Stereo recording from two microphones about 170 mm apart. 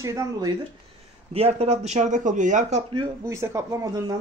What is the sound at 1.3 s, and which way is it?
Speech, 35° right (ahead or behind).